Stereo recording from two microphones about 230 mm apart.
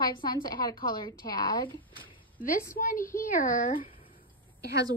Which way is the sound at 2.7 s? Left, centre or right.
Left.